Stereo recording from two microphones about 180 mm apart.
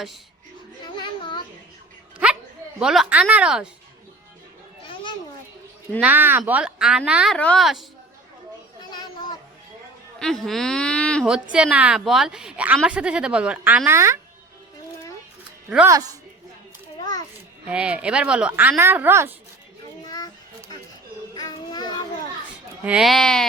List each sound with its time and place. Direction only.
2.8 s a woman's voice: 5° right (ahead or behind)
6.0 s a woman's voice: 10° right (ahead or behind)
7.3 s a woman's voice: 5° left (ahead or behind)
8.8 s children playing: 25° left (ahead or behind)
10.2 s a woman's voice: centre (ahead or behind); by 14.2 s 15° right (ahead or behind)
17.0 s children playing: 20° left (ahead or behind)
17.7 s a woman's voice: 5° right (ahead or behind)
20.1 s a sound: 20° left (ahead or behind)
21.3 s children playing: 20° left (ahead or behind)
22.4 s speech: 5° right (ahead or behind)